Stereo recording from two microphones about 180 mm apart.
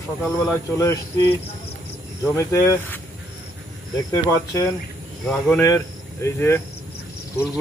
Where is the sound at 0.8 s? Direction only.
15° left (ahead or behind).